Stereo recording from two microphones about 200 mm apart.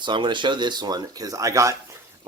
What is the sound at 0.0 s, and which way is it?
Speech, 25° right (ahead or behind).